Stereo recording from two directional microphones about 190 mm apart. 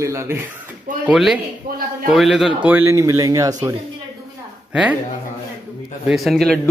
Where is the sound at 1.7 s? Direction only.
50° right (ahead or behind).